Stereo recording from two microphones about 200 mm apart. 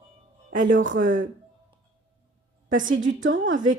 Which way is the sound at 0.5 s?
40° right (ahead or behind).